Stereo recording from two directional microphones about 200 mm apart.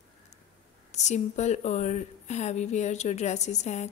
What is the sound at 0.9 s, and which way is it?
A woman's voice, 35° left (ahead or behind).